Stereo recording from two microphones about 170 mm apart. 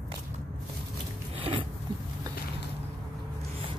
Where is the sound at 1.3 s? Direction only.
35° right (ahead or behind).